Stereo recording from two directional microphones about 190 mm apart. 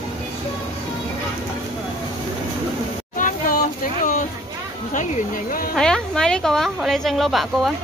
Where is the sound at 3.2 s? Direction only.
45° left (ahead or behind).